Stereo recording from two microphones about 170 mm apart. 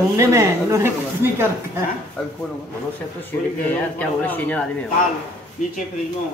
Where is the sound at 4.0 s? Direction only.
10° left (ahead or behind).